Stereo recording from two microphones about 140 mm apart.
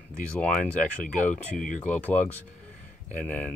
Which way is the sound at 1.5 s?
70° left (ahead or behind).